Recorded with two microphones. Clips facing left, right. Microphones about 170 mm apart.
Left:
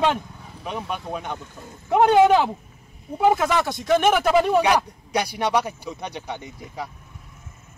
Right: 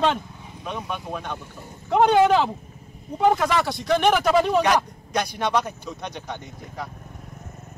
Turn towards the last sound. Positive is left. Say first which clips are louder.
# left 1 dB
turn(degrees=10)  # may be behind; listen again after turning